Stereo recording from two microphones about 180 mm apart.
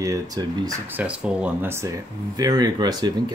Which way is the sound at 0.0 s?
20° right (ahead or behind).